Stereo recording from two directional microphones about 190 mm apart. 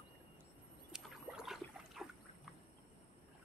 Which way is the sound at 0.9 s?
5° right (ahead or behind).